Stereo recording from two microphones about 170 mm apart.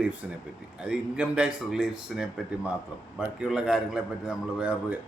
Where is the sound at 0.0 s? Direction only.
10° right (ahead or behind).